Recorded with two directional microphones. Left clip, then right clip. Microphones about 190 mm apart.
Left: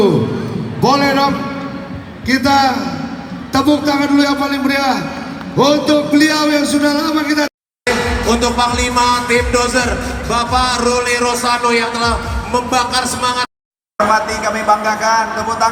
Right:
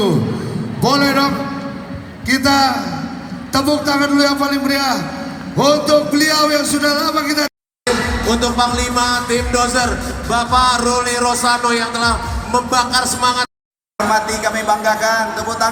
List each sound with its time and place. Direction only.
0.8 s a man's voice: 45° right (ahead or behind)
7.9 s speech: 5° right (ahead or behind)
14.1 s a man's voice: 50° right (ahead or behind)